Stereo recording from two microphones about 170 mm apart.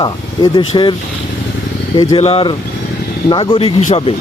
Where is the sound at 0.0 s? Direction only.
25° left (ahead or behind).